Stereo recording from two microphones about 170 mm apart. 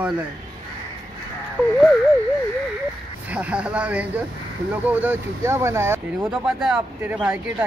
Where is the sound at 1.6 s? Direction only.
10° left (ahead or behind).